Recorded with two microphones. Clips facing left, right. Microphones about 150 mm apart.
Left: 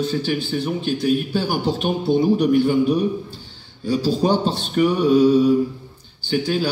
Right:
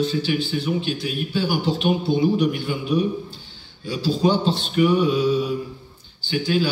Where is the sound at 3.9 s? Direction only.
45° left (ahead or behind).